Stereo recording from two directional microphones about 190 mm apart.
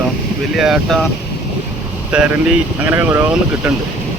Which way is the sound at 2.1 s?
5° right (ahead or behind).